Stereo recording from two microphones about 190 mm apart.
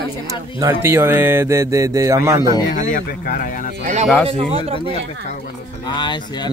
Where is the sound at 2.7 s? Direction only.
45° left (ahead or behind).